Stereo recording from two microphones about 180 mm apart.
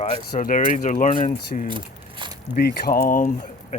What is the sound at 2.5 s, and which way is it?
Speech, 55° left (ahead or behind).